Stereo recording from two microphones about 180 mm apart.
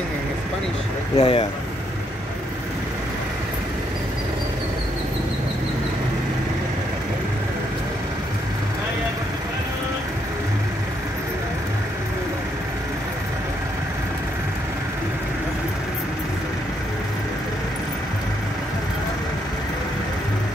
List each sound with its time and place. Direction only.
1.1 s speech: 25° left (ahead or behind)